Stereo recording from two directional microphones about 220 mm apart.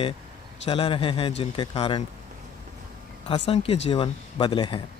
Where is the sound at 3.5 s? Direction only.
25° left (ahead or behind).